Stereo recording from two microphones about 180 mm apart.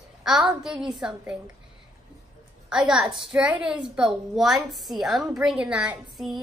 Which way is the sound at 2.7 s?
5° right (ahead or behind).